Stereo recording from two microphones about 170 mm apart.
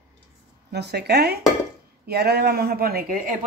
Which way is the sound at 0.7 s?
75° right (ahead or behind).